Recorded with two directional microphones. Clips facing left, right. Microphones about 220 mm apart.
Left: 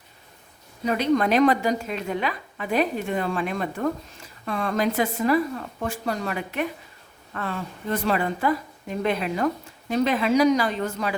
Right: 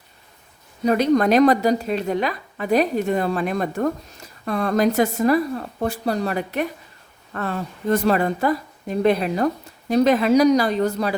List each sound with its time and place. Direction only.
0.9 s a woman's voice: 40° right (ahead or behind)